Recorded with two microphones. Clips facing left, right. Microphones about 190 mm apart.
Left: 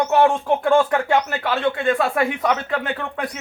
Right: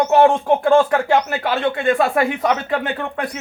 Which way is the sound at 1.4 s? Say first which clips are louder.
Right 2 dB; 45° right (ahead or behind).